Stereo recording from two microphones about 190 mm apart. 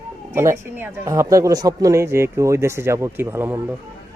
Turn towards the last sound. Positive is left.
turn(degrees=-10)  # may be behind; listen again after turning